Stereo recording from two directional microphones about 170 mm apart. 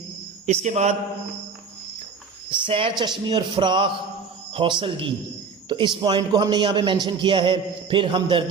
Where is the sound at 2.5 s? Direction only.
30° right (ahead or behind).